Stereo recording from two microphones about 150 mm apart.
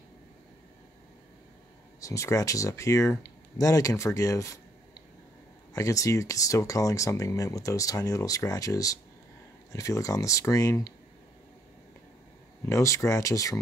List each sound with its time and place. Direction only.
2.0 s speech: 20° left (ahead or behind)
5.7 s speech: 20° left (ahead or behind)
12.6 s speech: 20° left (ahead or behind)